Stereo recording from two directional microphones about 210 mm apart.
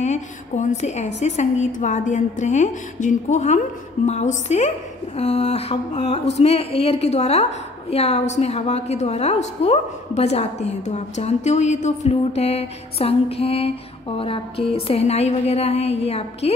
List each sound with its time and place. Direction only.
0.0 s a woman's voice: 35° left (ahead or behind)